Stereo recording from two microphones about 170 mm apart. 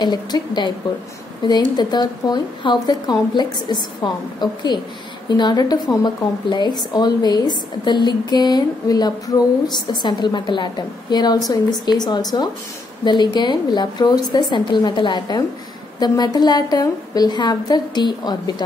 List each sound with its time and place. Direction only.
0.0 s a woman's voice: 25° left (ahead or behind)